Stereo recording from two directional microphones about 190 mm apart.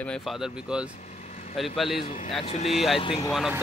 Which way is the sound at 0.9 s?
35° left (ahead or behind).